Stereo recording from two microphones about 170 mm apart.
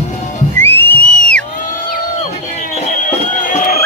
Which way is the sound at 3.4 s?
50° left (ahead or behind).